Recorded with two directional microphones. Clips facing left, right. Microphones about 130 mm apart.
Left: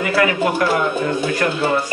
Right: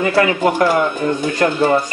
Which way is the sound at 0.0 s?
30° right (ahead or behind).